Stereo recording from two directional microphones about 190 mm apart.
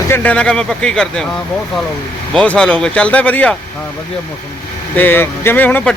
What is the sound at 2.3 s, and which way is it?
Speech, 5° left (ahead or behind).